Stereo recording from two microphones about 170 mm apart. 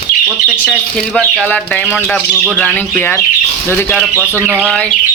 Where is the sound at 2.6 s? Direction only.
10° left (ahead or behind).